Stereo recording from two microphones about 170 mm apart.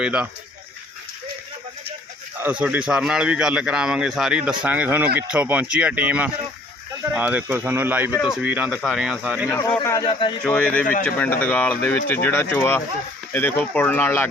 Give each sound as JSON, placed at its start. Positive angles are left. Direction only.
{"t": 0.0, "sound": "a man's voice", "side_deg": -5}
{"t": 2.4, "sound": "a man's voice", "side_deg": -5}
{"t": 9.6, "sound": "a man's voice", "side_deg": 20}
{"t": 10.1, "sound": "a man's voice", "side_deg": 30}
{"t": 10.4, "sound": "speech", "side_deg": 5}